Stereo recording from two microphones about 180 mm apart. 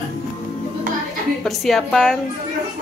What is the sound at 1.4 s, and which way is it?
Speech, centre (ahead or behind).